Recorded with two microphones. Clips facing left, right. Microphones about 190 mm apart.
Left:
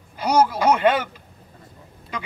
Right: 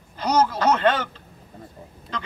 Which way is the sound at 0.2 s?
10° left (ahead or behind).